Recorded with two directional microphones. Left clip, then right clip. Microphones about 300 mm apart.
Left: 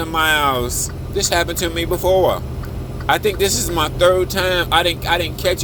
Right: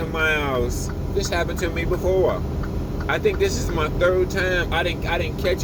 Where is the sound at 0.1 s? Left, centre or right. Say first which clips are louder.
Left 6 dB; left.